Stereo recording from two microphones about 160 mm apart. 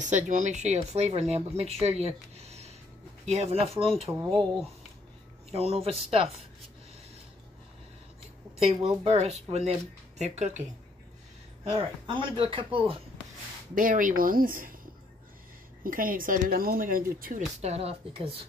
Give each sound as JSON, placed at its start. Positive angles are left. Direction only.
{"t": 0.0, "sound": "speech", "side_deg": -50}
{"t": 5.5, "sound": "speech", "side_deg": -40}
{"t": 8.6, "sound": "speech", "side_deg": -40}
{"t": 11.6, "sound": "speech", "side_deg": -35}
{"t": 13.7, "sound": "speech", "side_deg": -55}
{"t": 15.8, "sound": "speech", "side_deg": -60}
{"t": 17.6, "sound": "speech", "side_deg": -40}